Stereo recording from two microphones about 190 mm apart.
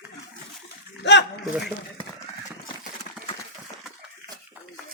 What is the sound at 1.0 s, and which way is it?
Speech, 65° left (ahead or behind).